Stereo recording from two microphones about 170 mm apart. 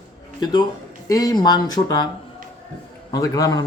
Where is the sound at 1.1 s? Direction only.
20° left (ahead or behind).